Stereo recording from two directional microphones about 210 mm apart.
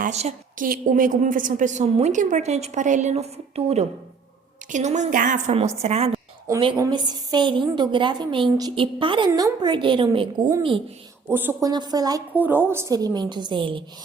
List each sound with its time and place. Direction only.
0.0 s a woman's voice: 30° right (ahead or behind)
6.5 s a woman's voice: 20° right (ahead or behind)
11.3 s a woman's voice: 10° right (ahead or behind)